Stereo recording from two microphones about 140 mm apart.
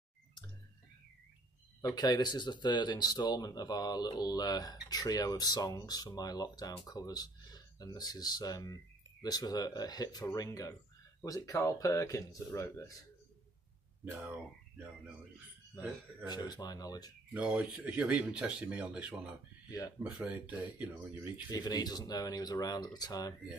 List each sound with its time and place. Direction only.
1.8 s speech: 25° left (ahead or behind)
14.1 s speech: 10° right (ahead or behind)
16.3 s speech: 30° left (ahead or behind)
17.3 s speech: 10° right (ahead or behind)
21.5 s speech: 30° left (ahead or behind)